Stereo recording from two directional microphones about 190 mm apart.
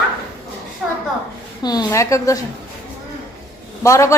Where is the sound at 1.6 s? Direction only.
20° left (ahead or behind).